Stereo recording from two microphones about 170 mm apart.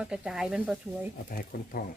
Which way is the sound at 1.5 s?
55° left (ahead or behind).